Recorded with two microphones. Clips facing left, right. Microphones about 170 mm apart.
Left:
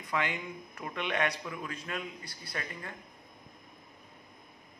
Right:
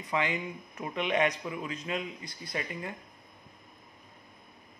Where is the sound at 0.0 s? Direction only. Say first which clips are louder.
Right 3 dB; 10° right (ahead or behind).